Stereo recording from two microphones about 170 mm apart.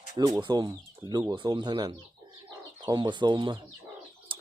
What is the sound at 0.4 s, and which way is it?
Speech, 25° right (ahead or behind).